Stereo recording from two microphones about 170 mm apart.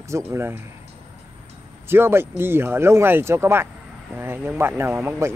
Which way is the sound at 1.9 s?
15° right (ahead or behind).